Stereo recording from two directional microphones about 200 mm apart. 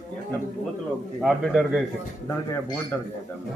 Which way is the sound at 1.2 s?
Centre (ahead or behind).